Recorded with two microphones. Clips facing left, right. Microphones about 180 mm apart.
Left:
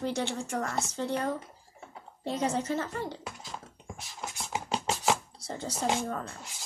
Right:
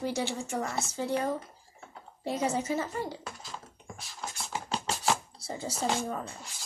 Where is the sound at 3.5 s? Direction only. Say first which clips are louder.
Left 1 dB; 15° left (ahead or behind).